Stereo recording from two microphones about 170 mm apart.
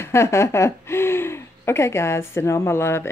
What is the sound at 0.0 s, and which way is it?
Speech, 15° left (ahead or behind).